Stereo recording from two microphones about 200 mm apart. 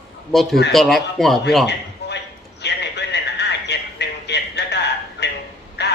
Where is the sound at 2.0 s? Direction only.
55° left (ahead or behind).